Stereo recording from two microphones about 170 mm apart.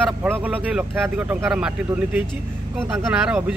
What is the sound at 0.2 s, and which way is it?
Speech, 10° right (ahead or behind).